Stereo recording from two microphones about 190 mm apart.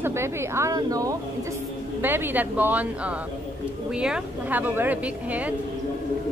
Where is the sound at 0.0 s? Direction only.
15° right (ahead or behind).